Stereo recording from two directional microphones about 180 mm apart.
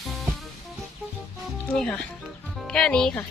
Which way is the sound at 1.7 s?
5° left (ahead or behind).